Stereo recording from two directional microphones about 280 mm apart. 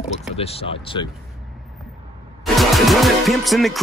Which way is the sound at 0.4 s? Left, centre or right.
Left.